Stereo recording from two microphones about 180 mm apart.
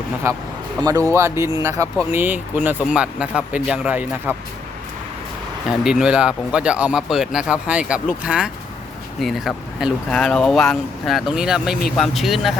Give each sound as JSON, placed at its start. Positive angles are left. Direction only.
{"t": 0.2, "sound": "speech", "side_deg": -15}
{"t": 5.6, "sound": "speech", "side_deg": -5}